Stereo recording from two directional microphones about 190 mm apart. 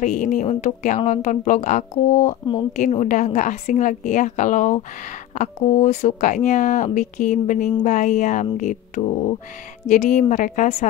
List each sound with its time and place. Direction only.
0.0 s a woman's voice: 40° left (ahead or behind)